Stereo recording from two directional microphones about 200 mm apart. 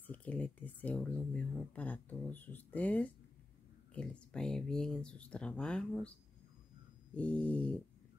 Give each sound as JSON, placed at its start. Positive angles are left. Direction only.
{"t": 0.0, "sound": "speech", "side_deg": 10}
{"t": 7.2, "sound": "speech", "side_deg": 5}